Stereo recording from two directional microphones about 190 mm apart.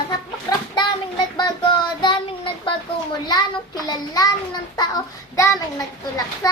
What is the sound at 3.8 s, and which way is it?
Speech, 20° left (ahead or behind).